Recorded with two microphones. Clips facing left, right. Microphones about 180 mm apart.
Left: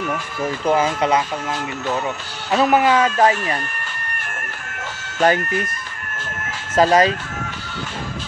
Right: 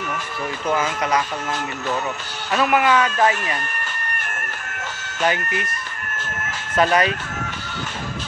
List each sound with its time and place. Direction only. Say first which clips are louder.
0.7 s speech: left 4 dB; 30° left (ahead or behind)
2.5 s speech: left 2 dB; 30° left (ahead or behind)
5.2 s speech: left 5 dB; 40° left (ahead or behind)
6.7 s speech: left 4 dB; 30° left (ahead or behind)